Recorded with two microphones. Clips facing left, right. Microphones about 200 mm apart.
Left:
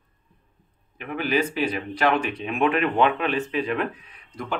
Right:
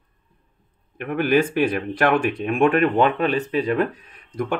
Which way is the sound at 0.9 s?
55° right (ahead or behind).